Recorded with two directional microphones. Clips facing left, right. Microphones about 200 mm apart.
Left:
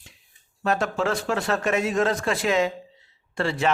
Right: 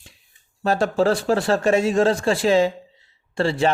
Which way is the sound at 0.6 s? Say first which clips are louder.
Right 5 dB; 30° right (ahead or behind).